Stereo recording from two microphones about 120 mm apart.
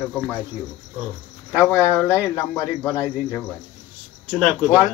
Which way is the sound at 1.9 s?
20° left (ahead or behind).